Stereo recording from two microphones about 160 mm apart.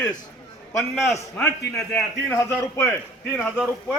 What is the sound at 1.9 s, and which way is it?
Speech, 15° left (ahead or behind).